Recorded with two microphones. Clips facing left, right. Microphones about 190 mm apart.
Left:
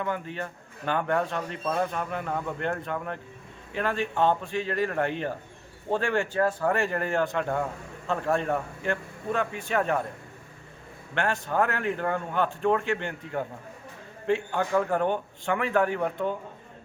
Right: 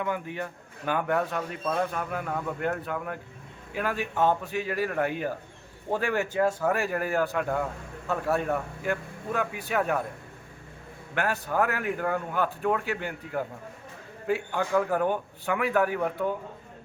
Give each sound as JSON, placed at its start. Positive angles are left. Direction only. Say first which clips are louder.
{"t": 0.0, "sound": "a man's voice", "louder": "even", "side_deg": -10}
{"t": 11.1, "sound": "a man's voice", "louder": "left 1 dB", "side_deg": -5}